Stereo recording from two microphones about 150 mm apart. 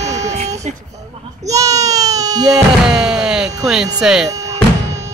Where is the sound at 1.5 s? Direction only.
20° right (ahead or behind).